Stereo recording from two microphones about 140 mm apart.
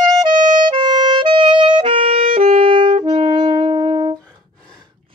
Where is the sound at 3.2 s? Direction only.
30° right (ahead or behind).